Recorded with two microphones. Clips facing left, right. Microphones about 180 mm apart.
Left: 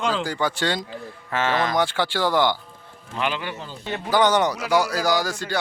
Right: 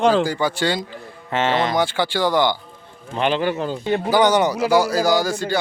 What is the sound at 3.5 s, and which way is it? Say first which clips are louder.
Speech: right 12 dB; 55° right (ahead or behind).